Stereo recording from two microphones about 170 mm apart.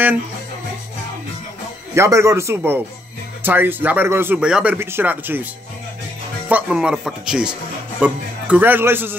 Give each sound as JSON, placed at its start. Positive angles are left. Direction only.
{"t": 2.0, "sound": "speech", "side_deg": -15}
{"t": 6.5, "sound": "speech", "side_deg": -5}